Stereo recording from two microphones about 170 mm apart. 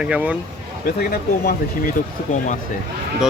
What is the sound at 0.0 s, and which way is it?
Speech, 5° right (ahead or behind).